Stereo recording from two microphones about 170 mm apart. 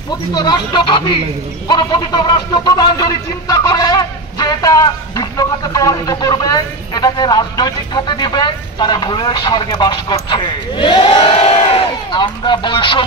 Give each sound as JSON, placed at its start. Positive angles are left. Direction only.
{"t": 0.3, "sound": "speech", "side_deg": 25}